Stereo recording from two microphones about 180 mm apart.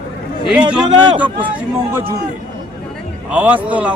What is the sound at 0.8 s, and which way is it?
Speech, 25° right (ahead or behind).